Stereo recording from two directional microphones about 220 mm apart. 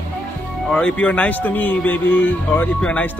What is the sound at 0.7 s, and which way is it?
Speech, 5° left (ahead or behind).